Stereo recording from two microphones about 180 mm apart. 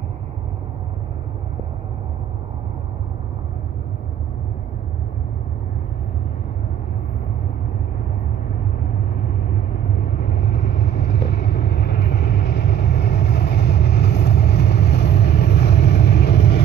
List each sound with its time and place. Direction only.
10.2 s vehicle: 60° left (ahead or behind)